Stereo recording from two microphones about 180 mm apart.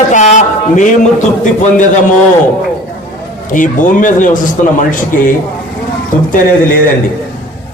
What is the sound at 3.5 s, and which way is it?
A man's voice, 45° left (ahead or behind).